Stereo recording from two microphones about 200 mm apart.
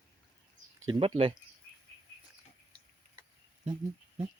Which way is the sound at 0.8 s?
25° right (ahead or behind).